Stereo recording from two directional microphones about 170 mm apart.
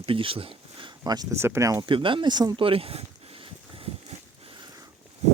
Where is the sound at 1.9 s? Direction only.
30° right (ahead or behind).